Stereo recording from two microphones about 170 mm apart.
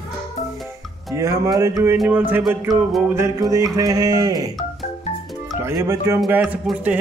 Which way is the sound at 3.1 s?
20° right (ahead or behind).